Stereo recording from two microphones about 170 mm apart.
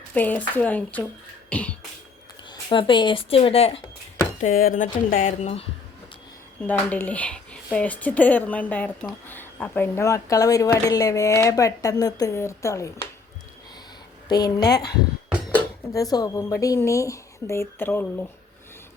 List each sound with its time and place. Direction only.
0.1 s speech: 10° left (ahead or behind)
1.5 s music: 5° left (ahead or behind)
2.5 s speech: 30° left (ahead or behind)
4.4 s speech: 55° left (ahead or behind)
6.7 s speech: 10° left (ahead or behind)
14.3 s speech: 20° left (ahead or behind)